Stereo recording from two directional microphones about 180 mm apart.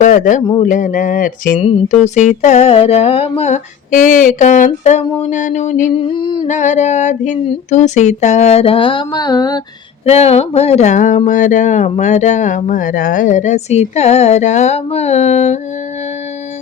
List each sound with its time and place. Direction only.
0.0 s a man's voice: 45° left (ahead or behind)
0.6 s a sound: 45° left (ahead or behind)
1.6 s speech: 35° left (ahead or behind)
5.9 s a sound: 30° left (ahead or behind)
6.5 s speech: 40° left (ahead or behind); by 9.6 s 20° left (ahead or behind)
10.1 s speech: 35° left (ahead or behind)